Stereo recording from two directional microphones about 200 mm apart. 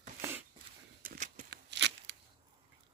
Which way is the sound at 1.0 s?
40° right (ahead or behind).